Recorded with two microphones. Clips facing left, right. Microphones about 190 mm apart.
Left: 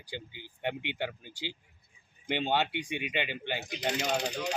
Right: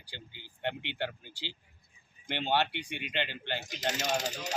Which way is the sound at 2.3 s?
15° left (ahead or behind).